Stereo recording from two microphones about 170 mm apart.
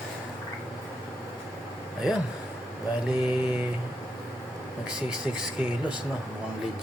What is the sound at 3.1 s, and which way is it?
Speech, 5° right (ahead or behind).